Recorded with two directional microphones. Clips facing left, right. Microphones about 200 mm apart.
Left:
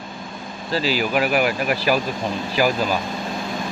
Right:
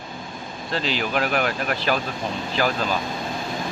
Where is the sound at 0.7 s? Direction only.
5° left (ahead or behind).